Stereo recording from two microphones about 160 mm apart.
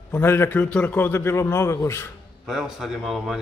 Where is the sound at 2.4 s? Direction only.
Centre (ahead or behind).